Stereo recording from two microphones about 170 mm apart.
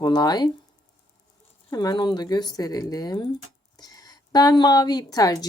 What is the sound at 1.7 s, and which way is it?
A woman's voice, 25° left (ahead or behind).